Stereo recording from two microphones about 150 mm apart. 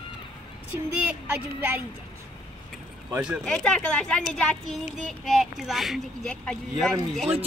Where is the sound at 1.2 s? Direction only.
10° right (ahead or behind).